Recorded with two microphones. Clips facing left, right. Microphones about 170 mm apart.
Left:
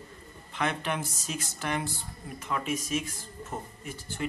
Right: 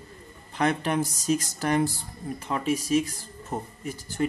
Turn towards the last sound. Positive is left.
turn(degrees=-40)  # may be behind; listen again after turning